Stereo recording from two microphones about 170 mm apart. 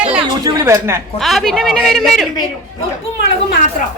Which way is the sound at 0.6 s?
15° right (ahead or behind).